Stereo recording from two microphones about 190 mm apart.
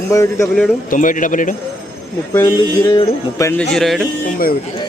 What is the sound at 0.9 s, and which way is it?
Speech, 45° left (ahead or behind).